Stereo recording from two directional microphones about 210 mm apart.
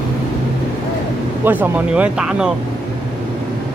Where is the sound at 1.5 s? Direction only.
10° right (ahead or behind).